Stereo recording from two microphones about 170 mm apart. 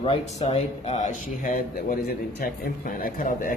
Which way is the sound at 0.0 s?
35° left (ahead or behind).